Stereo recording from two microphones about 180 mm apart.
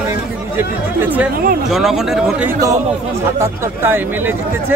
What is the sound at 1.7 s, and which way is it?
Speech, centre (ahead or behind).